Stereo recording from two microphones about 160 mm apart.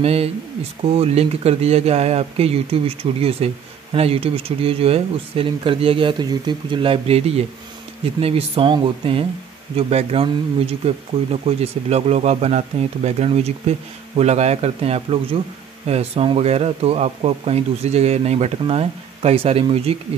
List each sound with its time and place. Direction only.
0.0 s speech: 40° right (ahead or behind)